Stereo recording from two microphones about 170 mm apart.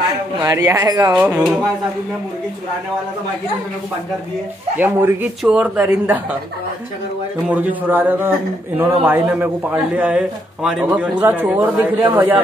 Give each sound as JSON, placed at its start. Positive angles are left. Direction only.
{"t": 0.4, "sound": "speech", "side_deg": -20}
{"t": 1.1, "sound": "a man's voice", "side_deg": -5}
{"t": 4.7, "sound": "a man's voice", "side_deg": -10}
{"t": 7.4, "sound": "a man's voice", "side_deg": -10}